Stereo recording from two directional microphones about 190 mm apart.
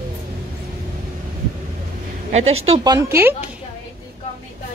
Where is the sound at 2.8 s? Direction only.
20° right (ahead or behind).